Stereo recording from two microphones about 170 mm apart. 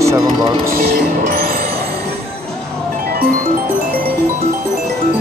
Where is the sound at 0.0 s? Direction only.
20° right (ahead or behind).